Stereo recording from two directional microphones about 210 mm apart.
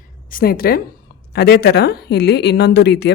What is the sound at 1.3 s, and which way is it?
Speech, 50° left (ahead or behind).